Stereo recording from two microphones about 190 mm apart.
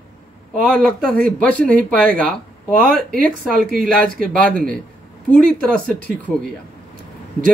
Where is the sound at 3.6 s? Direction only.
50° right (ahead or behind).